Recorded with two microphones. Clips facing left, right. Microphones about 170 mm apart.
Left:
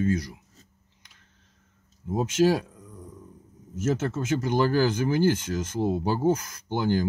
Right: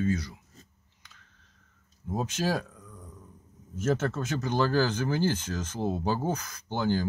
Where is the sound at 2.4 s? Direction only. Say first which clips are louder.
Left 9 dB; 20° left (ahead or behind).